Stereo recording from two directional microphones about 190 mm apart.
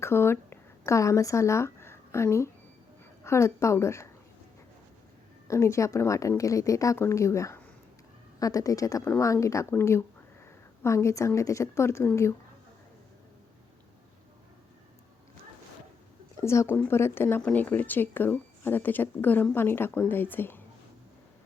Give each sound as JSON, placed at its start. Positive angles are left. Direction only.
{"t": 0.0, "sound": "speech", "side_deg": 15}
{"t": 5.5, "sound": "speech", "side_deg": 15}
{"t": 16.4, "sound": "speech", "side_deg": 15}